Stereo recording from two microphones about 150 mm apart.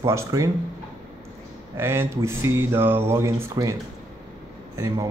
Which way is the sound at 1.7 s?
15° right (ahead or behind).